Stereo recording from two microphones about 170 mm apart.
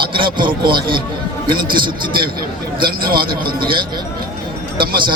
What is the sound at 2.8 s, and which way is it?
Speech, 60° right (ahead or behind).